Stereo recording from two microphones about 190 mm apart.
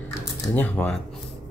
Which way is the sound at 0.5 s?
5° left (ahead or behind).